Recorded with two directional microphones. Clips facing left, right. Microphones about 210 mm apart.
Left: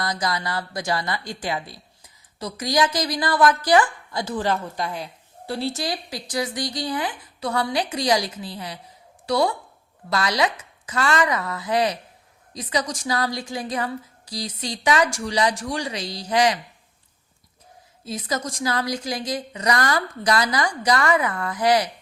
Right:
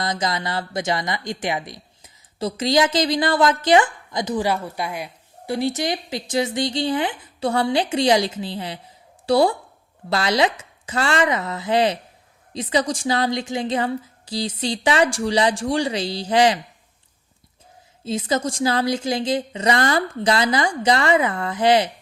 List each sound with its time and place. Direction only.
0.0 s speech: 25° right (ahead or behind)
18.0 s speech: 25° right (ahead or behind)